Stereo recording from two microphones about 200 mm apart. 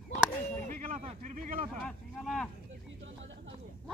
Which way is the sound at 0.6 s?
40° right (ahead or behind).